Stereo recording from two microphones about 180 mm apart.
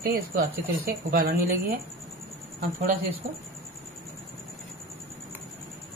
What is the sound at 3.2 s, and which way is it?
Speech, 55° right (ahead or behind).